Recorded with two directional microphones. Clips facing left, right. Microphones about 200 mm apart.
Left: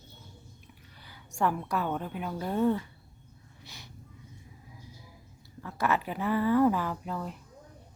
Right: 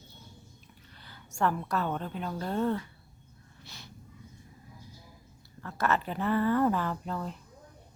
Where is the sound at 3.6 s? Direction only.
15° left (ahead or behind).